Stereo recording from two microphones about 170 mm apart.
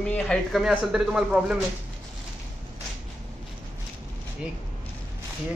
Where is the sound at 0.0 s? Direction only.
5° left (ahead or behind).